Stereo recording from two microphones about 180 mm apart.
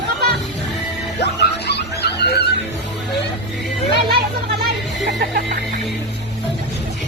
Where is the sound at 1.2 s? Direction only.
65° left (ahead or behind).